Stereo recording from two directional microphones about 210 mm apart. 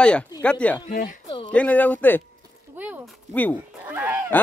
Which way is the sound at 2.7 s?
10° right (ahead or behind).